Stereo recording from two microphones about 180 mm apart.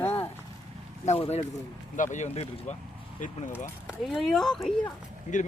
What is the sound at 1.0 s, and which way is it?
Speech, 35° left (ahead or behind).